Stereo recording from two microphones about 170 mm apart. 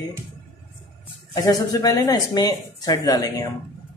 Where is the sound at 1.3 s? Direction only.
20° left (ahead or behind).